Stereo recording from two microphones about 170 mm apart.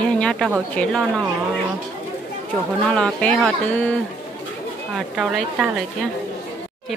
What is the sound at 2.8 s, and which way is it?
Speech, 5° left (ahead or behind).